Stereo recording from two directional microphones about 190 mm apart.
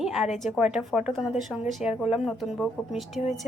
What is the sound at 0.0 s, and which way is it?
A woman's voice, centre (ahead or behind).